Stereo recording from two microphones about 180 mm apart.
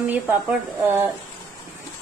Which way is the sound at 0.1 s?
10° right (ahead or behind).